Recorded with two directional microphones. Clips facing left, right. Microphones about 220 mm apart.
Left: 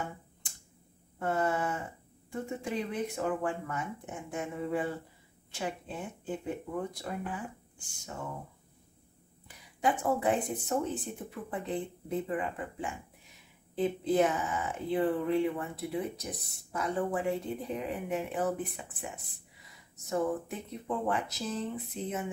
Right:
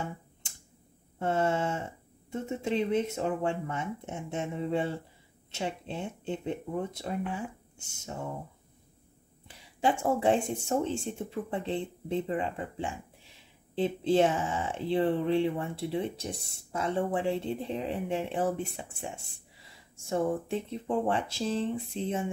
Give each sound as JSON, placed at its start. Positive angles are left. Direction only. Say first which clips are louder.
{"t": 1.2, "sound": "speech", "louder": "right 2 dB", "side_deg": -25}
{"t": 9.5, "sound": "speech", "louder": "right 2 dB", "side_deg": -30}